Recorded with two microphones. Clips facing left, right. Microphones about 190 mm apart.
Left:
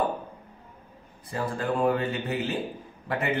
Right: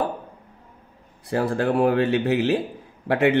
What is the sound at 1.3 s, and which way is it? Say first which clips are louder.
Speech: right 7 dB; 75° right (ahead or behind).